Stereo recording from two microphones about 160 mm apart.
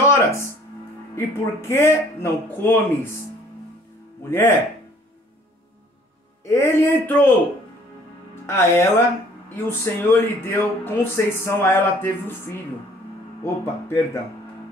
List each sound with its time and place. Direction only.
0.1 s music: 15° left (ahead or behind)
1.1 s speech: 15° left (ahead or behind)
4.3 s speech: 15° left (ahead or behind)
6.4 s speech: 15° left (ahead or behind)
8.5 s speech: 15° left (ahead or behind)